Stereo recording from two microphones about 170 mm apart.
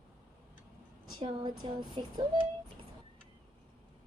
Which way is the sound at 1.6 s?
30° right (ahead or behind).